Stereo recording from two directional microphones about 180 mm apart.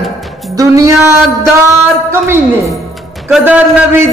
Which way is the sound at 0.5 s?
20° right (ahead or behind).